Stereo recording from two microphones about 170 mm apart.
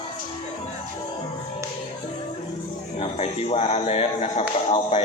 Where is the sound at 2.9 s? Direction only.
40° left (ahead or behind).